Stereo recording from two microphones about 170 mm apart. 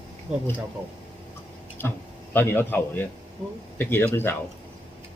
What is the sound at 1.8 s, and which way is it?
A man's voice, 10° left (ahead or behind).